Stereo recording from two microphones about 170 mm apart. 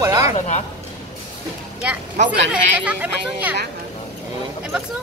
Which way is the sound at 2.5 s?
10° right (ahead or behind).